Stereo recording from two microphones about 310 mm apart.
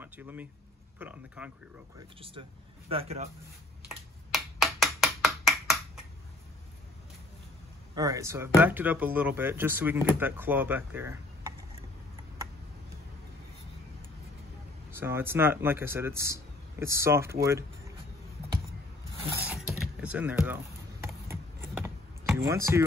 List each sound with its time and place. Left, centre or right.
0.0 s speech: centre
2.0 s speech: centre
3.9 s a sound: centre
7.9 s speech: centre
14.9 s speech: centre
19.4 s computer keyboard: centre
21.0 s a sound: centre